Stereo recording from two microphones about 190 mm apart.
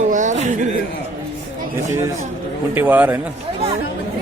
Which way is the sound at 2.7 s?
10° right (ahead or behind).